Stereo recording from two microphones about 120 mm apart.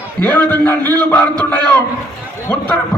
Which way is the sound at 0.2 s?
15° left (ahead or behind).